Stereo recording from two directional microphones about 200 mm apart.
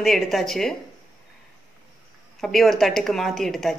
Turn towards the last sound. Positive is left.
turn(degrees=0)  # may be behind; listen again after turning